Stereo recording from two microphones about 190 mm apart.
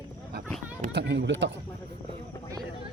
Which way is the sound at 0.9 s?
65° right (ahead or behind).